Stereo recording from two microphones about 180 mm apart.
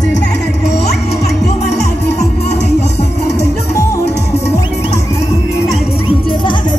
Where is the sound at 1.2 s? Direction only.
40° left (ahead or behind).